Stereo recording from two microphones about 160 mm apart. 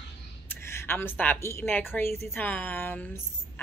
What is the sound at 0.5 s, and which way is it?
Speech, 15° left (ahead or behind).